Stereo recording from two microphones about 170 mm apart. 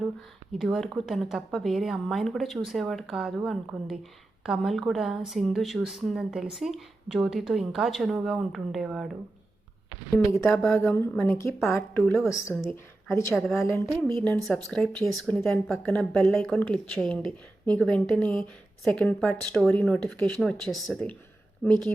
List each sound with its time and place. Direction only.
0.6 s speech: centre (ahead or behind)
10.4 s speech: centre (ahead or behind)
10.9 s a woman's voice: 10° left (ahead or behind)
13.3 s speech: centre (ahead or behind)
13.6 s a woman's voice: 15° left (ahead or behind)
14.0 s speech: 5° left (ahead or behind)